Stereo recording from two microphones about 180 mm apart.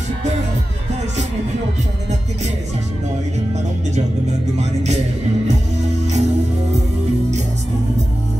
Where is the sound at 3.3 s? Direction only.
40° right (ahead or behind).